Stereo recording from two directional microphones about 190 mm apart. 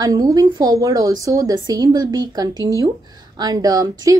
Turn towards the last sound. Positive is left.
turn(degrees=-20)  # may be behind; listen again after turning